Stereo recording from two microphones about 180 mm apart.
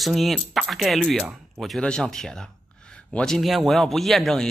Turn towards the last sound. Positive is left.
turn(degrees=0)  # may be behind; listen again after turning